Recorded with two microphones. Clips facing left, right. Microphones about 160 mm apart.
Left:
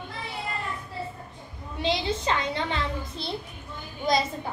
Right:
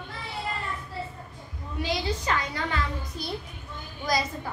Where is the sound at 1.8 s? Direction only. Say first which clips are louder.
Left 3 dB; 25° left (ahead or behind).